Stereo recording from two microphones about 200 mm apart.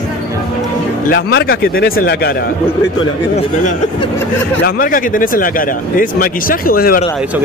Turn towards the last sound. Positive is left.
turn(degrees=45)  # may be behind; listen again after turning